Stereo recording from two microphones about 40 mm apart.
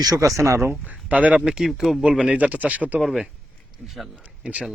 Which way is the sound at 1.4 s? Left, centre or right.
Centre.